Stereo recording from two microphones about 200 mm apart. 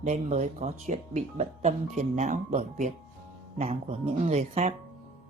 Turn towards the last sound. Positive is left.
turn(degrees=-30)  # may be behind; listen again after turning